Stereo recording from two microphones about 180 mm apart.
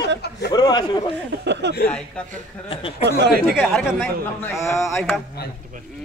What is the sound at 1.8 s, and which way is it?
Speech, 5° left (ahead or behind).